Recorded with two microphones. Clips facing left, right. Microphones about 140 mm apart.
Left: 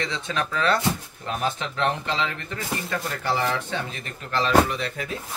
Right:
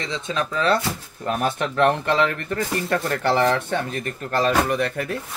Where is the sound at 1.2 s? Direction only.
55° right (ahead or behind).